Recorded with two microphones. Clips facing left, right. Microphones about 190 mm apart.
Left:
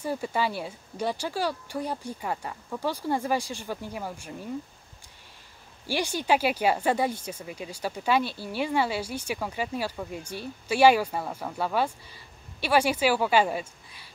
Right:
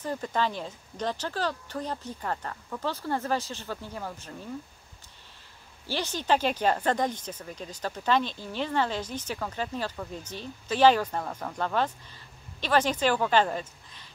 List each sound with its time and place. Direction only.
0.0 s speech: 10° left (ahead or behind)
5.9 s speech: 10° left (ahead or behind)